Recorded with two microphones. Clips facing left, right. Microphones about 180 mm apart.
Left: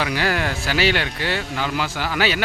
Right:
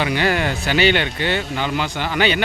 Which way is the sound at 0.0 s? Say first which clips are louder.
Right 3 dB; centre (ahead or behind).